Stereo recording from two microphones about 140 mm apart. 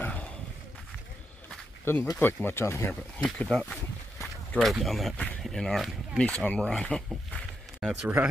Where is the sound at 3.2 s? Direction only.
5° left (ahead or behind).